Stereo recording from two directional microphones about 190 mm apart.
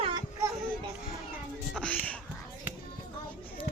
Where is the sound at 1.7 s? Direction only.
5° left (ahead or behind).